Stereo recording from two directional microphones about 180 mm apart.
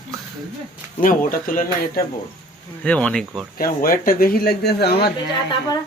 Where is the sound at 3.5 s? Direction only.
55° left (ahead or behind).